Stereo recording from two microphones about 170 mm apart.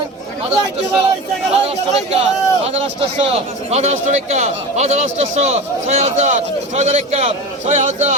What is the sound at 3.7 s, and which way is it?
A man's voice, 40° right (ahead or behind).